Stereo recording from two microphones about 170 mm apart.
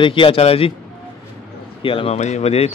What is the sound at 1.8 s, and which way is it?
Speech, 30° left (ahead or behind).